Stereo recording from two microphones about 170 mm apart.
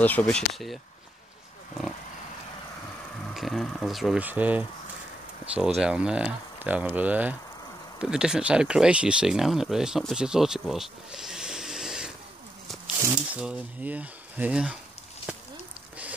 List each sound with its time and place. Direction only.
0.0 s speech: 10° left (ahead or behind)
3.3 s speech: centre (ahead or behind)